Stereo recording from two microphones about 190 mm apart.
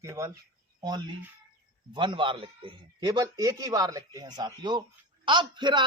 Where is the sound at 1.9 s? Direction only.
25° right (ahead or behind).